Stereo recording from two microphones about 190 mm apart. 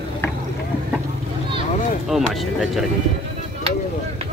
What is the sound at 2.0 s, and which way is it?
Speech, centre (ahead or behind).